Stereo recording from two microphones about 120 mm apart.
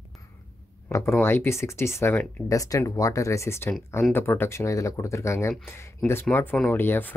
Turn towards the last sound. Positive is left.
turn(degrees=15)  # may be behind; listen again after turning